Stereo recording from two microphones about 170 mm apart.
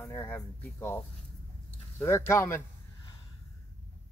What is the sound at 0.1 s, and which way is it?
Speech, 15° left (ahead or behind).